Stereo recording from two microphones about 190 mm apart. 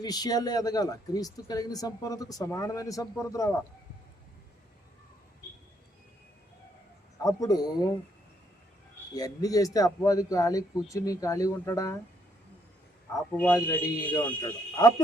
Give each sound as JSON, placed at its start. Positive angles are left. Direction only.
{"t": 0.0, "sound": "speech", "side_deg": 20}
{"t": 7.2, "sound": "speech", "side_deg": 20}
{"t": 9.1, "sound": "a man's voice", "side_deg": 20}
{"t": 13.1, "sound": "a man's voice", "side_deg": 10}
{"t": 14.4, "sound": "speech", "side_deg": 20}